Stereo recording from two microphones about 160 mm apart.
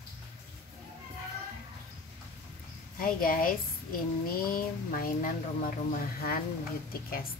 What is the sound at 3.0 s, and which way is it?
Speech, 65° left (ahead or behind).